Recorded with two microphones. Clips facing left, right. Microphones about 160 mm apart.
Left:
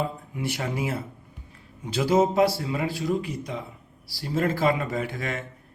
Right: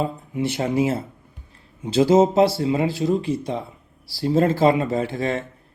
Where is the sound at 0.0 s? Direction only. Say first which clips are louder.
Right 5 dB; 25° right (ahead or behind).